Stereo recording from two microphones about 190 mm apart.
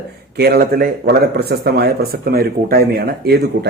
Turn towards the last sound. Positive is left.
turn(degrees=-55)  # may be behind; listen again after turning